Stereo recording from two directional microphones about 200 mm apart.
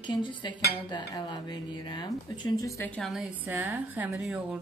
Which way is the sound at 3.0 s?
Centre (ahead or behind).